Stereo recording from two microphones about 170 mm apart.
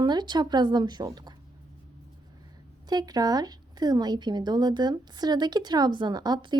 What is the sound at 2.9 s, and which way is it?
A woman's voice, 25° right (ahead or behind).